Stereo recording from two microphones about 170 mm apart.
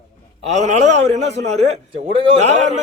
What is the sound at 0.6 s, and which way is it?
A man's voice, 40° right (ahead or behind).